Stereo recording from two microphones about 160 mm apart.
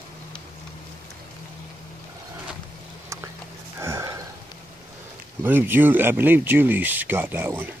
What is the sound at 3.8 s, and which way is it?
Sniff, 15° right (ahead or behind).